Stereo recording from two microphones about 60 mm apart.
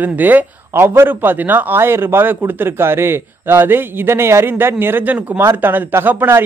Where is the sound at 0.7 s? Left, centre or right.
Right.